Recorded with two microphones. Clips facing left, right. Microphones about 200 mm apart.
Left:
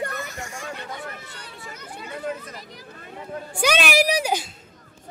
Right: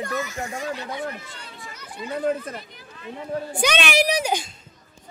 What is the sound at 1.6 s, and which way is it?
Children playing, 60° left (ahead or behind).